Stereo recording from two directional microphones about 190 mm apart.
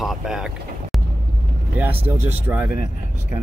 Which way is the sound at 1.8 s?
10° right (ahead or behind).